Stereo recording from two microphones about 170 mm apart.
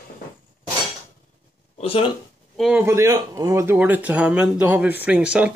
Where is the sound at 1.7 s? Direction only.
35° left (ahead or behind).